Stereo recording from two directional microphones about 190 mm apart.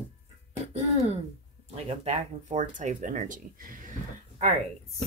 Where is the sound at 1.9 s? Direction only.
35° right (ahead or behind).